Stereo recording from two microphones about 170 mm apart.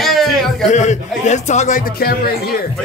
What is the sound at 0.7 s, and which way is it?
A man's voice, 45° left (ahead or behind).